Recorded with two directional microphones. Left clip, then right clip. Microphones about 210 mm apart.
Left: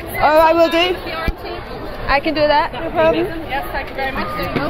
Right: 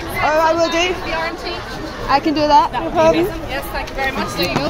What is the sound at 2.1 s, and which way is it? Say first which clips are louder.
A woman's voice: right 1 dB; 5° right (ahead or behind).